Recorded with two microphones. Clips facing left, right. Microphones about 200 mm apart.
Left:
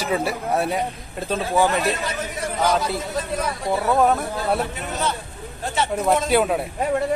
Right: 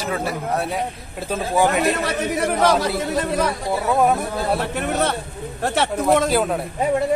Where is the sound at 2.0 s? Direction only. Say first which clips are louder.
Right 6 dB; 70° right (ahead or behind).